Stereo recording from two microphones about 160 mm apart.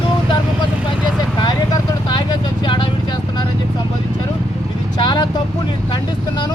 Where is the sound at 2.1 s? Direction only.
30° left (ahead or behind).